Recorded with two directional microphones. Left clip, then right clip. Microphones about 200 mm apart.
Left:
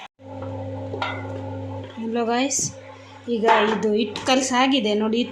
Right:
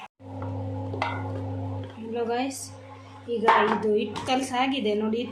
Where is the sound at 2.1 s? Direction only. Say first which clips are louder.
Left 6 dB; 35° left (ahead or behind).